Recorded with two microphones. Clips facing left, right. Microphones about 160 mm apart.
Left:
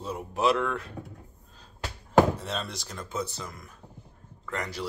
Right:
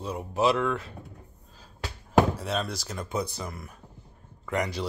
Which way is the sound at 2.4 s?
Centre (ahead or behind).